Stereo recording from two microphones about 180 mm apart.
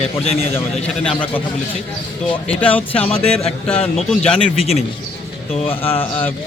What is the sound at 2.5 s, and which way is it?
Speech, 10° left (ahead or behind).